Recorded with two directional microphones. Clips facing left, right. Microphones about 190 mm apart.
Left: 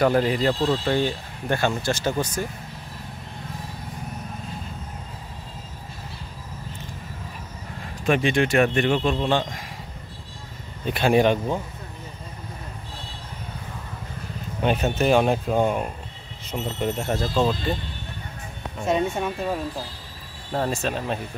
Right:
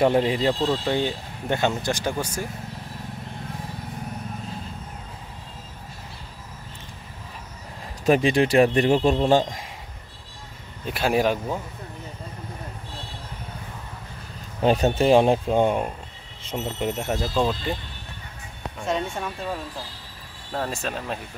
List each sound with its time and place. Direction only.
0.0 s speech: 25° right (ahead or behind)
8.0 s speech: 35° right (ahead or behind)
10.9 s speech: 5° right (ahead or behind)
14.6 s speech: 35° right (ahead or behind); by 17.3 s 15° right (ahead or behind)
17.4 s speech: centre (ahead or behind)
18.9 s speech: 5° left (ahead or behind)
20.7 s speech: centre (ahead or behind)